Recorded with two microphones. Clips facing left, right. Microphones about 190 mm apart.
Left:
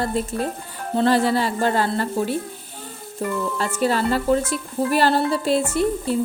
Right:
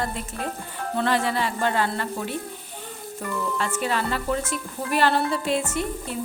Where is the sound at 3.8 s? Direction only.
35° left (ahead or behind).